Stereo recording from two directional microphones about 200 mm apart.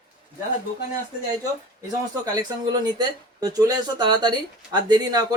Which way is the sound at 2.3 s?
20° right (ahead or behind).